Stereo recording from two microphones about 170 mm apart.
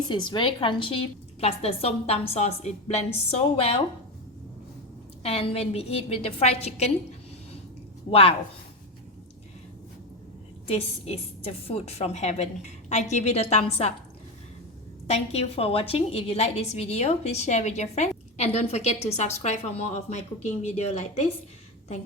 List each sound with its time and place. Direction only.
0.1 s a woman's voice: 25° left (ahead or behind)
5.2 s a woman's voice: 35° left (ahead or behind)
8.1 s a woman's voice: 35° left (ahead or behind)
10.7 s a woman's voice: 35° left (ahead or behind)
15.0 s a woman's voice: 40° left (ahead or behind)